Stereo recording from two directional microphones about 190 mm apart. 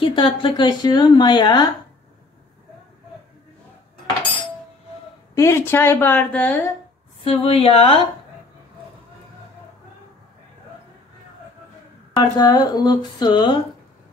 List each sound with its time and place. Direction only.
0.0 s speech: 25° left (ahead or behind)
5.3 s a woman's voice: 15° left (ahead or behind)
7.2 s a woman's voice: 30° left (ahead or behind)
12.2 s speech: 20° left (ahead or behind)